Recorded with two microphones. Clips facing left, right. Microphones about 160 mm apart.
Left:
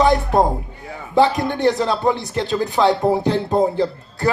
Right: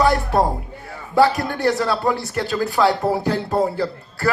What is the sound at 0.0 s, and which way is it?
Music, 20° left (ahead or behind).